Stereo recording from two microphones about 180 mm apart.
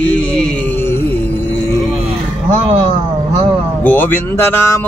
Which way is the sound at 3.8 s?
10° left (ahead or behind).